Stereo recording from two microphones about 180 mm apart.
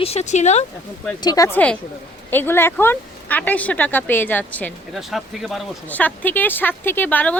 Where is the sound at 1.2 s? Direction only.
20° left (ahead or behind).